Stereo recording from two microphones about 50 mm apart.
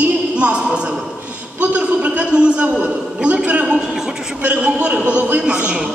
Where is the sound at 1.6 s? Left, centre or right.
Right.